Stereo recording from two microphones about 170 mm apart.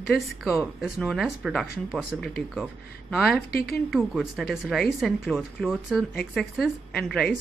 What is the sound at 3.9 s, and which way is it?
Speech, centre (ahead or behind).